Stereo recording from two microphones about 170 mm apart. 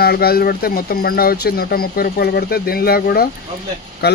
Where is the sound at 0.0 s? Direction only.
65° left (ahead or behind).